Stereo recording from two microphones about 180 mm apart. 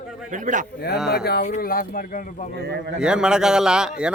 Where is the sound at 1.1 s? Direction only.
60° left (ahead or behind).